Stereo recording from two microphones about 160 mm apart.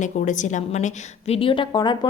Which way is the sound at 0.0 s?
50° left (ahead or behind).